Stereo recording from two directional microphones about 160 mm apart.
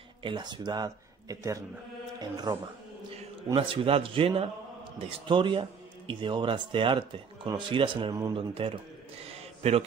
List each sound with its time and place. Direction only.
0.2 s speech: 30° right (ahead or behind)
3.5 s speech: 35° right (ahead or behind)
9.3 s a sound: 40° right (ahead or behind)